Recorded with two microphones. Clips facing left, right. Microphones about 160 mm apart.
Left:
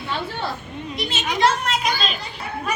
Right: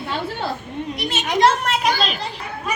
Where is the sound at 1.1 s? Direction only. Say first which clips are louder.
Right 3 dB; 55° right (ahead or behind).